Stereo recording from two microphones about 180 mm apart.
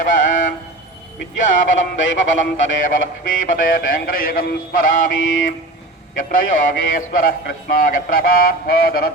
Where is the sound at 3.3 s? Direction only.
50° left (ahead or behind).